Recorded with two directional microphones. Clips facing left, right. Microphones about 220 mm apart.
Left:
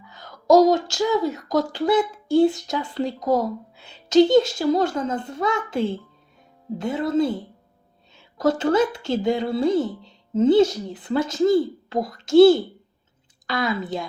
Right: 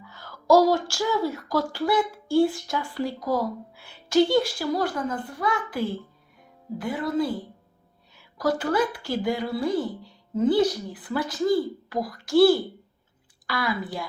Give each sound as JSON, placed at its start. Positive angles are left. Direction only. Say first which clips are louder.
{"t": 0.0, "sound": "speech", "louder": "left 1 dB", "side_deg": 20}